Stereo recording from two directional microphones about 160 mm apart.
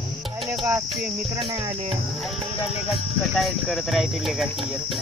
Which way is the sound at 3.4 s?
Centre (ahead or behind).